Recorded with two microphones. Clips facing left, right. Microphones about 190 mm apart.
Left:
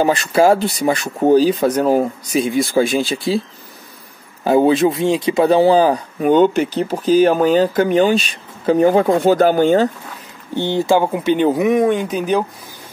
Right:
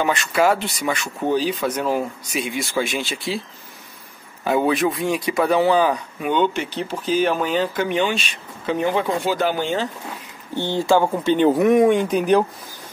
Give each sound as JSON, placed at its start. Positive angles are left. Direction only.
{"t": 0.0, "sound": "speech", "side_deg": 35}
{"t": 4.5, "sound": "speech", "side_deg": 30}
{"t": 10.5, "sound": "speech", "side_deg": 20}
{"t": 11.1, "sound": "speech", "side_deg": 5}
{"t": 11.7, "sound": "speech", "side_deg": -5}